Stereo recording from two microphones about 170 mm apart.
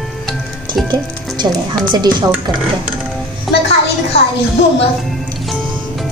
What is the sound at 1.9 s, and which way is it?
Speech, 25° right (ahead or behind).